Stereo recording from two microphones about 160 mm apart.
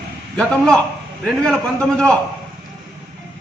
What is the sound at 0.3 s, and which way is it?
A man's voice, 5° left (ahead or behind).